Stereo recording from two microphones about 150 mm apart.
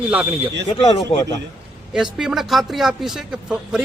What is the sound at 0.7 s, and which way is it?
Speech, 35° left (ahead or behind).